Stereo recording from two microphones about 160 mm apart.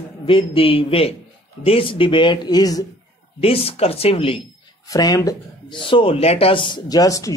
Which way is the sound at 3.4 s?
35° left (ahead or behind).